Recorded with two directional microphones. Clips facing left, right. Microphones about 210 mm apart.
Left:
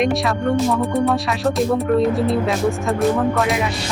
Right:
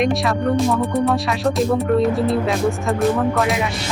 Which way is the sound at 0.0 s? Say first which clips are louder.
Even; centre (ahead or behind).